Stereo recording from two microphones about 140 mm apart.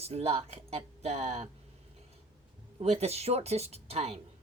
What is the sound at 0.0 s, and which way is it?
Speech, 45° right (ahead or behind).